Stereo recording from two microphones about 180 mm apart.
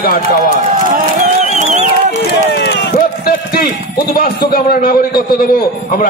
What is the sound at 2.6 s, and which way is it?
Run, 65° left (ahead or behind).